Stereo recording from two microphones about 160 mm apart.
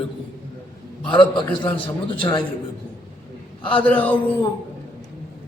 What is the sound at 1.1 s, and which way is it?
Speech, 30° left (ahead or behind).